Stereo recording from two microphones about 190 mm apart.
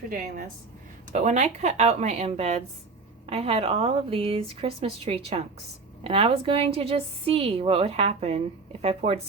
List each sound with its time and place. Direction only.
1.1 s a woman's voice: 40° right (ahead or behind)